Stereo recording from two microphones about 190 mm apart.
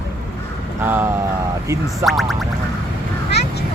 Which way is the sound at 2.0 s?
Centre (ahead or behind).